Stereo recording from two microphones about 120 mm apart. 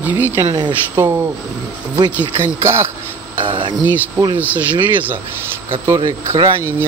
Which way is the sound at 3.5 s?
45° right (ahead or behind).